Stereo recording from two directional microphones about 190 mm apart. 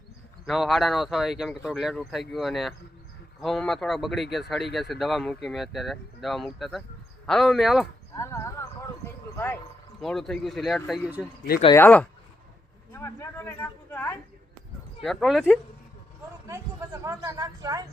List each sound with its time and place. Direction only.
0.4 s speech: centre (ahead or behind)
8.1 s horse: 15° left (ahead or behind)
10.0 s speech: centre (ahead or behind)
11.6 s speech: 15° left (ahead or behind)
16.5 s speech: 15° right (ahead or behind)